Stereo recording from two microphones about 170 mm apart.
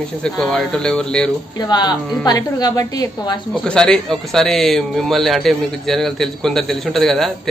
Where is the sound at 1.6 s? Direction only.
25° left (ahead or behind).